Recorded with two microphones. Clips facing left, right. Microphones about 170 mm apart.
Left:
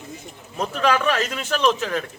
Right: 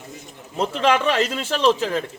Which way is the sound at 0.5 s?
25° right (ahead or behind).